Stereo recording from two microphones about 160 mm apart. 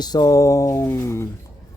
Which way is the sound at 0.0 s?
25° left (ahead or behind).